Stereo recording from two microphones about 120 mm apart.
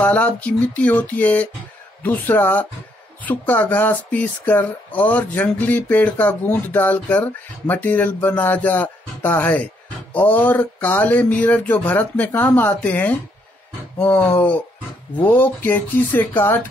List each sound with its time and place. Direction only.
0.0 s speech: 15° left (ahead or behind)